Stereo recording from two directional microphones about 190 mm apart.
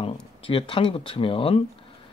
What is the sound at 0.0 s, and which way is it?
Speech, 30° left (ahead or behind).